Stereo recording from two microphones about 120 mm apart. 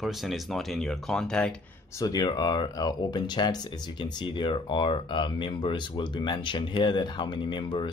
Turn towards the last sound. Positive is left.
turn(degrees=45)  # may be behind; listen again after turning